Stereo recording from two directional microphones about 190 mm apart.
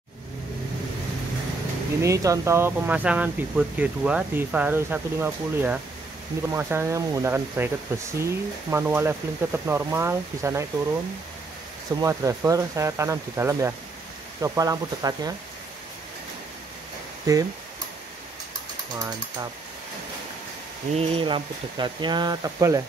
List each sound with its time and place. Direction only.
2.0 s speech: 15° right (ahead or behind)
12.0 s speech: 15° right (ahead or behind)
17.3 s speech: 20° right (ahead or behind)
20.9 s speech: 30° right (ahead or behind)